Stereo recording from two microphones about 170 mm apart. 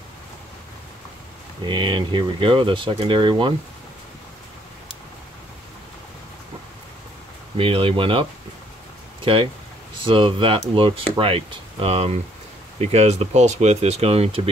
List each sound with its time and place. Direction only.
1.7 s speech: 25° right (ahead or behind)
7.5 s speech: 30° right (ahead or behind)